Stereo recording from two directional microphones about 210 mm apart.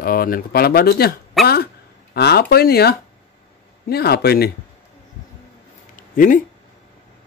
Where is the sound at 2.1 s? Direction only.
50° left (ahead or behind).